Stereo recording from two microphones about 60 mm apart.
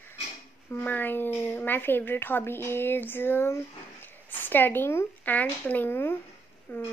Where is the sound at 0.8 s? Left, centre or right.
Left.